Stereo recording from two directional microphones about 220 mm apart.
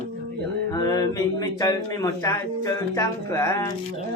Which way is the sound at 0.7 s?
15° left (ahead or behind).